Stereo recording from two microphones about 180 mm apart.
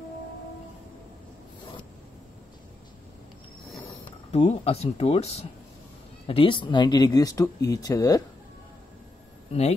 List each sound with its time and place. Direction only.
4.3 s speech: 40° left (ahead or behind); by 8.2 s 20° left (ahead or behind)
9.5 s speech: 35° left (ahead or behind)